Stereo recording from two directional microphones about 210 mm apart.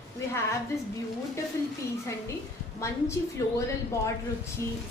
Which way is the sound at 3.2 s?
15° left (ahead or behind).